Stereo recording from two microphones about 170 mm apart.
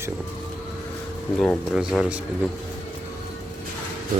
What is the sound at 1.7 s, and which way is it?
Speech, 5° right (ahead or behind).